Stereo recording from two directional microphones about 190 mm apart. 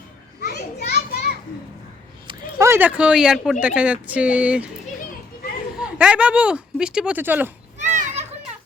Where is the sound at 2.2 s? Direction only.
25° right (ahead or behind).